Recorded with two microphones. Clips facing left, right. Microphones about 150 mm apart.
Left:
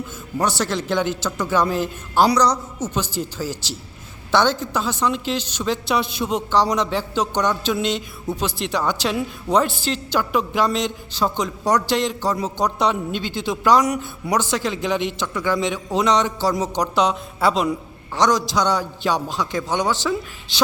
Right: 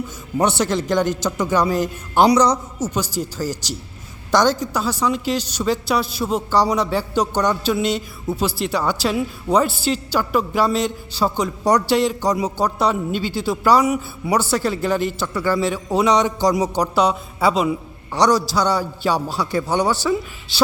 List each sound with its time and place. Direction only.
0.3 s a man's voice: 20° right (ahead or behind)
2.7 s a man's voice: 10° right (ahead or behind)